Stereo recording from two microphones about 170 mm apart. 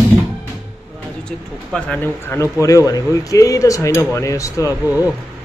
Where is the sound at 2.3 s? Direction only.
20° left (ahead or behind).